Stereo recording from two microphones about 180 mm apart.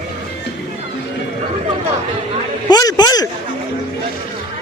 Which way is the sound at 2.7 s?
20° left (ahead or behind).